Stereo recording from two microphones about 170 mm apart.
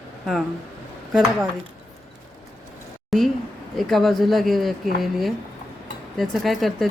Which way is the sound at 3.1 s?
Centre (ahead or behind).